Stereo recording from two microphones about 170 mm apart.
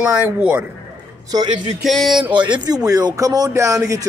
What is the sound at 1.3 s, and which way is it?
Speech, 25° right (ahead or behind).